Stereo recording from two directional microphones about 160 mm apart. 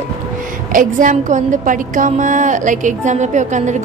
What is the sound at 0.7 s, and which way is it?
A woman's voice, 50° right (ahead or behind).